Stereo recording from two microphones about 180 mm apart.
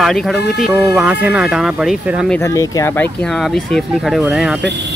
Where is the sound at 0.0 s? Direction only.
Centre (ahead or behind).